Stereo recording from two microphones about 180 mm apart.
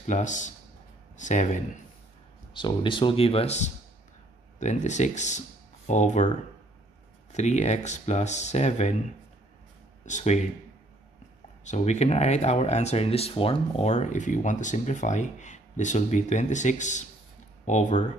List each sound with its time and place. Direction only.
0.0 s speech: 45° left (ahead or behind)
2.5 s speech: 25° left (ahead or behind)
7.3 s speech: 40° left (ahead or behind)
10.0 s speech: 40° left (ahead or behind)
11.6 s speech: 40° left (ahead or behind)